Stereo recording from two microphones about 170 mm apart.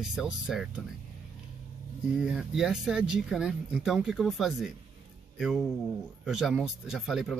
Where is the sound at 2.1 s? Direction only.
5° right (ahead or behind).